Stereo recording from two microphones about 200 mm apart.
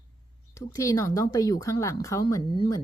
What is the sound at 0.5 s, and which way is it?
Speech, 15° left (ahead or behind).